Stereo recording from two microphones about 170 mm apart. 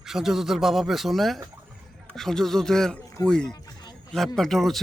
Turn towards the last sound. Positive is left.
turn(degrees=0)  # may be behind; listen again after turning